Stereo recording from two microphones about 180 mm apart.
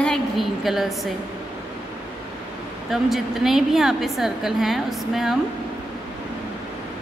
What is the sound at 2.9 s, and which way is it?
A woman's voice, centre (ahead or behind).